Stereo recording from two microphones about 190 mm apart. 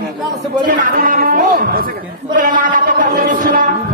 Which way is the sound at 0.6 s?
45° right (ahead or behind).